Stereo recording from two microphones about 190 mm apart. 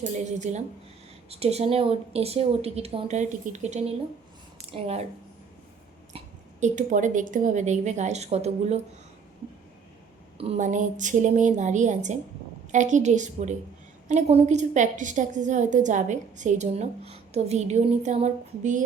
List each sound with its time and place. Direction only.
0.0 s a woman's voice: 40° right (ahead or behind)
6.1 s a woman's voice: 40° right (ahead or behind)
10.3 s a woman's voice: 35° right (ahead or behind)